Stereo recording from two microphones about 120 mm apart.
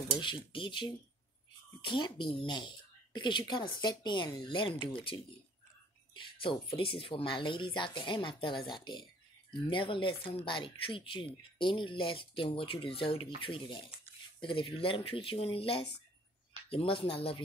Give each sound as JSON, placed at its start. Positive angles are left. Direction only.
{"t": 0.2, "sound": "speech", "side_deg": 45}
{"t": 6.1, "sound": "speech", "side_deg": 45}